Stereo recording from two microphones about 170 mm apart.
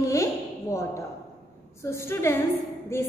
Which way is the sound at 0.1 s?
15° left (ahead or behind).